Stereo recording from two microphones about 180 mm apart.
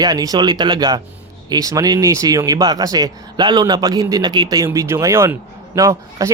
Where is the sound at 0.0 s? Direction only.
20° right (ahead or behind).